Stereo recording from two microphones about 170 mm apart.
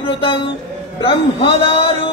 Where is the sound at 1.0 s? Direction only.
30° left (ahead or behind).